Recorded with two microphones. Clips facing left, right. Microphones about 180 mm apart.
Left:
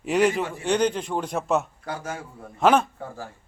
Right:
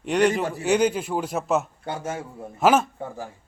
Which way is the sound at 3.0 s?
15° right (ahead or behind).